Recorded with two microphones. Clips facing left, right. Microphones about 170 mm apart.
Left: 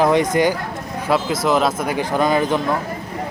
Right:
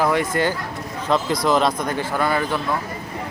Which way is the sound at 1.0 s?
5° left (ahead or behind).